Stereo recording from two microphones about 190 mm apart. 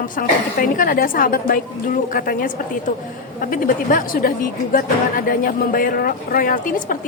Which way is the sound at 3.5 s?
45° left (ahead or behind).